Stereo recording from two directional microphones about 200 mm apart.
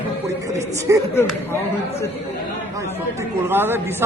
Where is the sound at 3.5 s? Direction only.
10° right (ahead or behind).